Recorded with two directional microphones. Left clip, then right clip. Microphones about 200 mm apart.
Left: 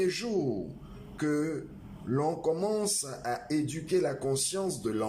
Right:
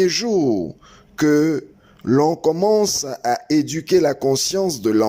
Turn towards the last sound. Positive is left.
turn(degrees=-40)  # may be behind; listen again after turning